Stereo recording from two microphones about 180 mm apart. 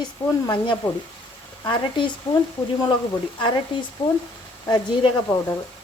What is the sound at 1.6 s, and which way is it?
Speech, 25° left (ahead or behind).